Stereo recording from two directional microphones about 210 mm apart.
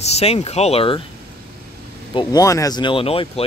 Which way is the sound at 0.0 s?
30° left (ahead or behind).